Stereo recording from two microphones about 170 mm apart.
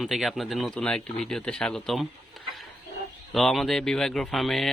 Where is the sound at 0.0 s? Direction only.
Centre (ahead or behind).